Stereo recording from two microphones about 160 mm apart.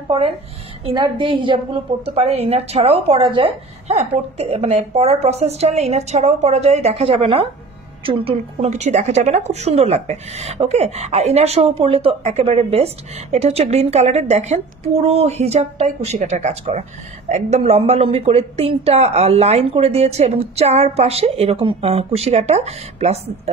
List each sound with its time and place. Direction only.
0.8 s a woman's voice: 30° right (ahead or behind)